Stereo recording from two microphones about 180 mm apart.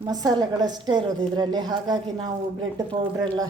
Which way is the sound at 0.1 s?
20° right (ahead or behind).